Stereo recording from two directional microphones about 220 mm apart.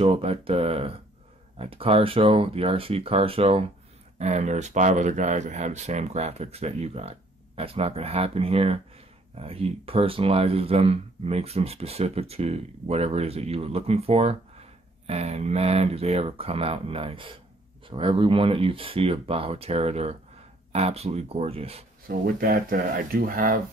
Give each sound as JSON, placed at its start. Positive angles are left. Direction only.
{"t": 0.0, "sound": "speech", "side_deg": -25}
{"t": 22.0, "sound": "speech", "side_deg": -40}